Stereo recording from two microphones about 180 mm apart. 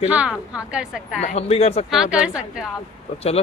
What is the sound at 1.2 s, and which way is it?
Speech, 35° left (ahead or behind).